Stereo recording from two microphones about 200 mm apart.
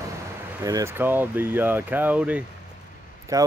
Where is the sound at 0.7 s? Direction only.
15° right (ahead or behind).